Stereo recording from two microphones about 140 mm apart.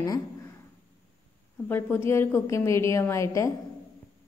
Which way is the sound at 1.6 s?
15° left (ahead or behind).